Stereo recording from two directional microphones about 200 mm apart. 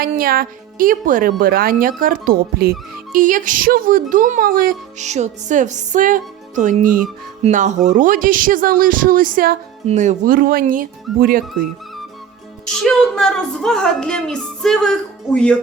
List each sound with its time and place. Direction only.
0.0 s speech: 45° right (ahead or behind)
12.7 s a woman's voice: centre (ahead or behind)